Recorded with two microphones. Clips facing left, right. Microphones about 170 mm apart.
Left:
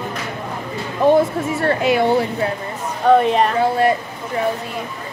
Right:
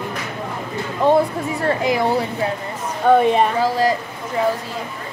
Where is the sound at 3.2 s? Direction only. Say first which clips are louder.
Right 1 dB; centre (ahead or behind).